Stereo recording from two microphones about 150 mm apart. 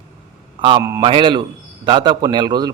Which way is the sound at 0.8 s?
20° right (ahead or behind).